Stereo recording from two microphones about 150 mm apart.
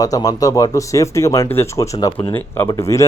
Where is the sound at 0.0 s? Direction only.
25° left (ahead or behind).